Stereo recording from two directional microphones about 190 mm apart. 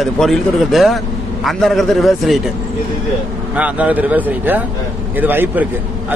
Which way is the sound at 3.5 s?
5° right (ahead or behind).